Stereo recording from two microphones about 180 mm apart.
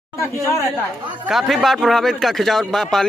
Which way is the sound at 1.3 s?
Centre (ahead or behind).